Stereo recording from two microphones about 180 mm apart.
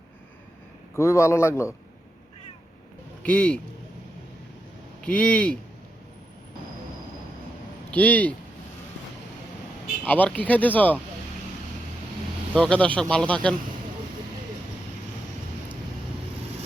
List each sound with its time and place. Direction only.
0.9 s speech: 15° left (ahead or behind)
3.2 s speech: 5° left (ahead or behind)
4.9 s speech: 5° left (ahead or behind)
7.9 s speech: 10° left (ahead or behind)
10.0 s speech: 10° left (ahead or behind)
12.5 s speech: 5° left (ahead or behind)